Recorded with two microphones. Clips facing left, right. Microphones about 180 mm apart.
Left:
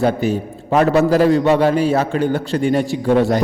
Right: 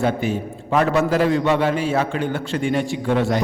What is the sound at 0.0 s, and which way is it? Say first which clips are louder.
A man's voice: left 4 dB; 40° left (ahead or behind).